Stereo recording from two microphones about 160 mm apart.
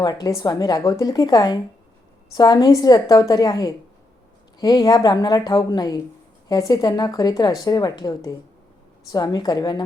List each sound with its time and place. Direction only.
0.0 s a woman's voice: 25° left (ahead or behind)